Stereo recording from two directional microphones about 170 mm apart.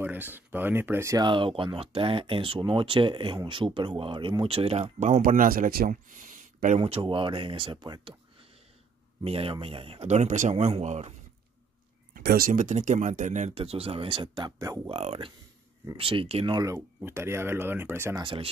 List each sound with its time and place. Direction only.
0.0 s speech: 10° right (ahead or behind); by 6.1 s 55° right (ahead or behind)
6.8 s speech: 30° right (ahead or behind)
12.2 s speech: 60° right (ahead or behind); by 14.8 s 20° right (ahead or behind)
14.9 s speech: 35° right (ahead or behind)
16.5 s speech: 15° right (ahead or behind)
18.2 s speech: 30° right (ahead or behind)